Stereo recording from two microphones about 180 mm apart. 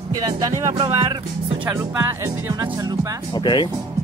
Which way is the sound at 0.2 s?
20° right (ahead or behind).